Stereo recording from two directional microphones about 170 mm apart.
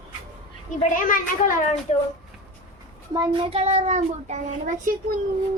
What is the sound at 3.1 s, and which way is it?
A child's voice, 25° right (ahead or behind).